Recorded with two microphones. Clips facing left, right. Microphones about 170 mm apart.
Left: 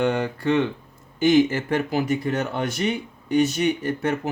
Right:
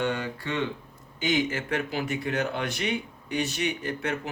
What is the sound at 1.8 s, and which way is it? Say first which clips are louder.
Speech: left 7 dB; 40° left (ahead or behind).